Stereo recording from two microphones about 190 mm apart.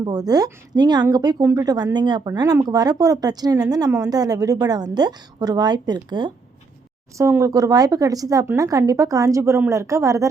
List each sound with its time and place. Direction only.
0.0 s a woman's voice: 20° right (ahead or behind)